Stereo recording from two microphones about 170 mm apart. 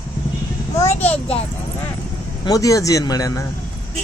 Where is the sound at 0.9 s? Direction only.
10° left (ahead or behind).